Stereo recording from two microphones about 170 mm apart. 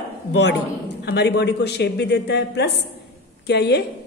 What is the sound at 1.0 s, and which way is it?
A woman's voice, 80° left.